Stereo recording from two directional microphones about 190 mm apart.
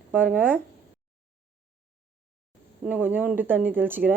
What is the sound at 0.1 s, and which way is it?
Speech, 10° right (ahead or behind).